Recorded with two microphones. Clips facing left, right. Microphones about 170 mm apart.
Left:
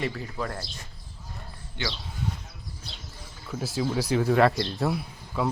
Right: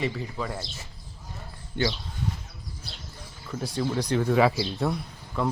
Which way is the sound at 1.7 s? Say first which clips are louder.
Right 7 dB; 50° right (ahead or behind).